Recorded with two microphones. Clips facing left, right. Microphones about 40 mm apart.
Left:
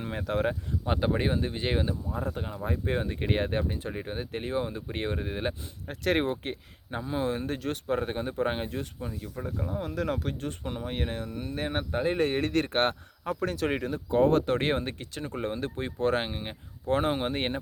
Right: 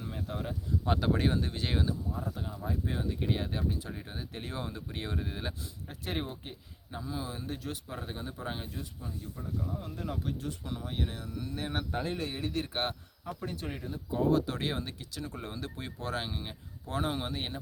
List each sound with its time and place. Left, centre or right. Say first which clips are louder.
0.0 s speech: left 9 dB; left
0.9 s speech: left 2 dB; left
2.1 s speech: left 5 dB; left
5.9 s speech: left 10 dB; left
6.9 s speech: left 9 dB; left
9.8 s speech: left 7 dB; left
12.1 s speech: left 8 dB; left
13.4 s speech: left 11 dB; left